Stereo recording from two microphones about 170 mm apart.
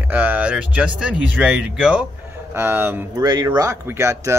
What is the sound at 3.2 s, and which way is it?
Speech, 25° right (ahead or behind).